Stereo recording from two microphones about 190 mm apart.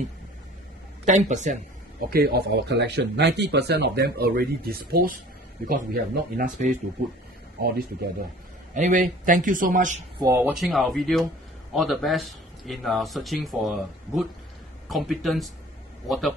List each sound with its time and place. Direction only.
1.0 s a man's voice: 40° right (ahead or behind)
8.7 s a man's voice: 40° right (ahead or behind)
10.2 s speech: 10° right (ahead or behind)